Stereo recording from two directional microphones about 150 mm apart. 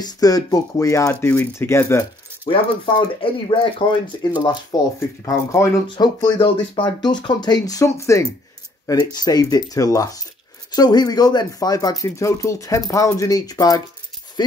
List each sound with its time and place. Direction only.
0.0 s speech: 25° left (ahead or behind)
2.4 s speech: 35° left (ahead or behind)